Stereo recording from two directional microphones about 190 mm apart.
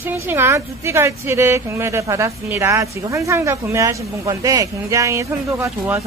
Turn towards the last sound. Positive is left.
turn(degrees=-15)  # may be behind; listen again after turning